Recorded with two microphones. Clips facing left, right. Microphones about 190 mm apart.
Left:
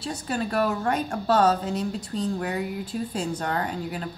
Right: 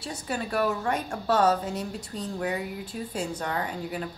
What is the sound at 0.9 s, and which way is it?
Speech, 35° left (ahead or behind).